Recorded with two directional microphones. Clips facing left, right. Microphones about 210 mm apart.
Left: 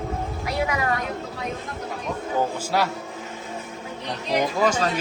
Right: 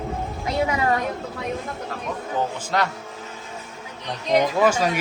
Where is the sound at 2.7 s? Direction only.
5° left (ahead or behind).